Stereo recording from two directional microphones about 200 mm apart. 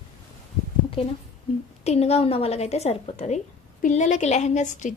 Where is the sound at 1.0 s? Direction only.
30° left (ahead or behind).